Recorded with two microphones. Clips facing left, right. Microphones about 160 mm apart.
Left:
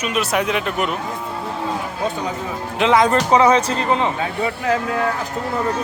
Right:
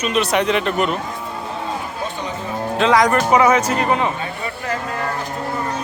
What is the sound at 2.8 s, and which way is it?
Speech, 20° left (ahead or behind).